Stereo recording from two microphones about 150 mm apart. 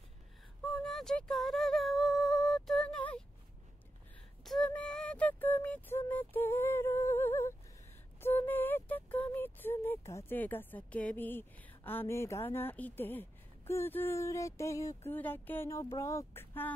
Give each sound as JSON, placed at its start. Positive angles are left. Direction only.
{"t": 0.7, "sound": "humming", "side_deg": 0}
{"t": 4.5, "sound": "a sound", "side_deg": 5}
{"t": 8.2, "sound": "music", "side_deg": 15}
{"t": 15.1, "sound": "speech", "side_deg": 10}